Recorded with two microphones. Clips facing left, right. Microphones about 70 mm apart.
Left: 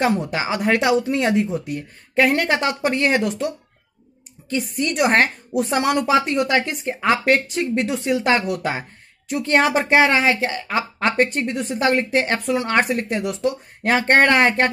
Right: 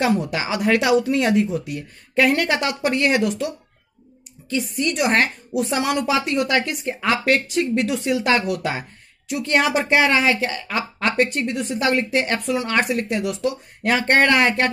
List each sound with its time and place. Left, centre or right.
0.0 s a woman's voice: left